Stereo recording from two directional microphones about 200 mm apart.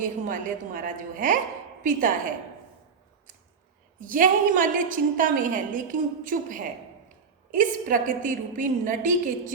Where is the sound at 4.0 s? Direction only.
40° right (ahead or behind).